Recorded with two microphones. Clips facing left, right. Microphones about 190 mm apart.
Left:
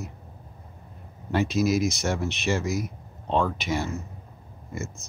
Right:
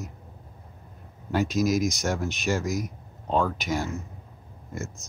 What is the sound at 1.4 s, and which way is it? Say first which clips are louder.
Speech: left 1 dB; 40° right (ahead or behind).